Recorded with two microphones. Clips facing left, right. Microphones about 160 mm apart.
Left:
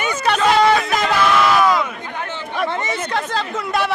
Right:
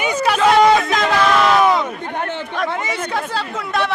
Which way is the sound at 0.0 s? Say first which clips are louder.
Right 2 dB; 10° right (ahead or behind).